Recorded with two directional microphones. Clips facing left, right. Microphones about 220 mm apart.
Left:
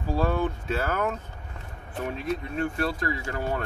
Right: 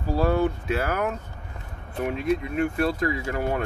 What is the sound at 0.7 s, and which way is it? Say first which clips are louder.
Speech: right 1 dB; centre (ahead or behind).